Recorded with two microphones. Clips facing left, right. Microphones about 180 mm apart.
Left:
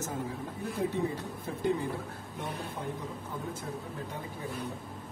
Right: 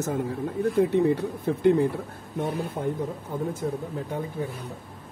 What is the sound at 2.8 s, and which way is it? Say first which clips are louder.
Speech: right 10 dB; 50° right (ahead or behind).